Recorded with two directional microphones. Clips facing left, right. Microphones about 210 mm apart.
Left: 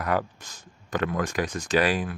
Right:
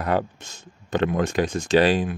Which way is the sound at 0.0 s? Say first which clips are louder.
Right 3 dB; 25° right (ahead or behind).